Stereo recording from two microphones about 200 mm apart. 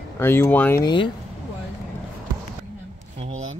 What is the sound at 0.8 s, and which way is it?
Speech, 25° left (ahead or behind).